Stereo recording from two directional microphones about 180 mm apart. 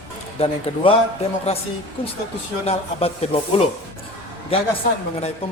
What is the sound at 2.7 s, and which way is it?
Speech, 35° left (ahead or behind).